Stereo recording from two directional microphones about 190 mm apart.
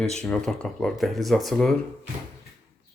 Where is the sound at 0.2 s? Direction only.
Centre (ahead or behind).